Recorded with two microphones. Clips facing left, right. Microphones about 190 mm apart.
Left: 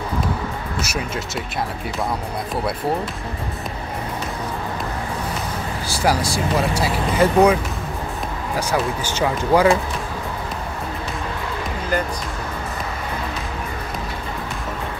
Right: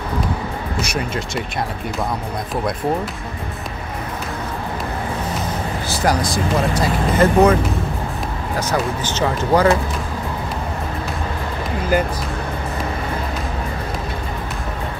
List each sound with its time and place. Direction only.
0.8 s speech: 5° left (ahead or behind)
5.9 s speech: 10° left (ahead or behind)
8.5 s speech: 10° left (ahead or behind)